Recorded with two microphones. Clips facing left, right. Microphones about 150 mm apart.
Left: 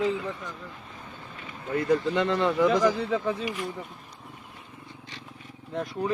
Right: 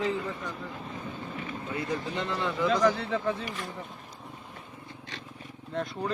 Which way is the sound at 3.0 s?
15° left (ahead or behind).